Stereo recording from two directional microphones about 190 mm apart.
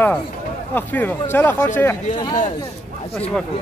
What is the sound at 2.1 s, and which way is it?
Speech, 25° left (ahead or behind).